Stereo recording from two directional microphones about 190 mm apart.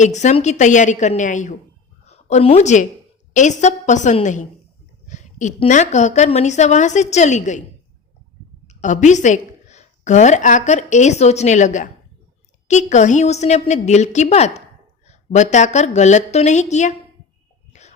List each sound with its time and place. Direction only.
0.0 s a woman's voice: 40° left (ahead or behind)
8.6 s a woman's voice: 40° left (ahead or behind)
17.7 s a sound: 35° left (ahead or behind)